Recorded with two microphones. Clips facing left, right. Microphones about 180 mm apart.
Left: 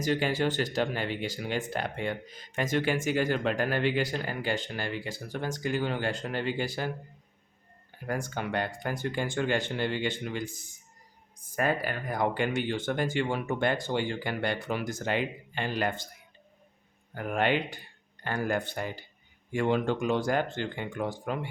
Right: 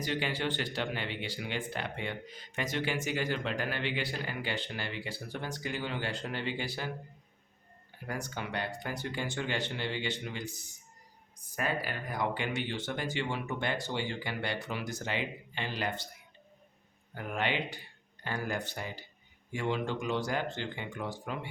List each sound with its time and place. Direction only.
0.0 s speech: 45° left (ahead or behind)
8.0 s speech: 50° left (ahead or behind)
17.2 s speech: 50° left (ahead or behind)